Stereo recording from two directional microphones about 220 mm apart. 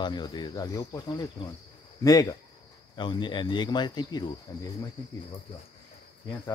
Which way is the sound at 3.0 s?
20° left (ahead or behind).